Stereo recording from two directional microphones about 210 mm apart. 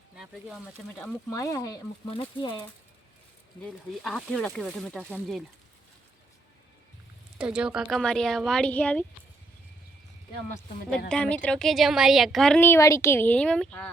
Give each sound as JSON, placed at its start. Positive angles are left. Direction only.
{"t": 0.2, "sound": "a woman's voice", "side_deg": 0}
{"t": 1.3, "sound": "speech", "side_deg": 15}
{"t": 4.0, "sound": "a woman's voice", "side_deg": 5}
{"t": 7.3, "sound": "a woman's voice", "side_deg": -5}
{"t": 11.1, "sound": "a woman's voice", "side_deg": 5}